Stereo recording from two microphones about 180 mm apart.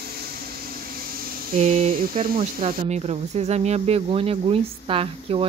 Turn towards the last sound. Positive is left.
turn(degrees=-30)  # may be behind; listen again after turning